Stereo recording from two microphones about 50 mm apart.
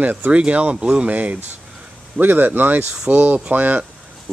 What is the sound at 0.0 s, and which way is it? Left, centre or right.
Speech, right.